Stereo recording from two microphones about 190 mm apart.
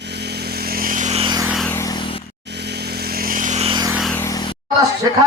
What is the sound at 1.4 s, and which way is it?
Vehicle, 5° right (ahead or behind).